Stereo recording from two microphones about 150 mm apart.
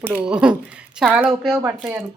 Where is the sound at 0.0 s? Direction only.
10° right (ahead or behind).